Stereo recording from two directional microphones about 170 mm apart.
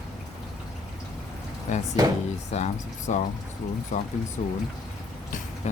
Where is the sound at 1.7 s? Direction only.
45° left (ahead or behind).